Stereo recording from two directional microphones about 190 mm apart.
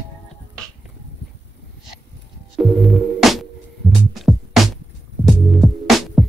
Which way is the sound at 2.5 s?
Centre (ahead or behind).